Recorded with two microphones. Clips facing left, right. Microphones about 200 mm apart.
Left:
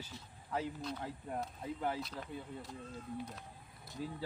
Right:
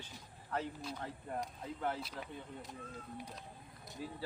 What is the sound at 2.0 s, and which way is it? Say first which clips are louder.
Speech: left 1 dB; 10° right (ahead or behind).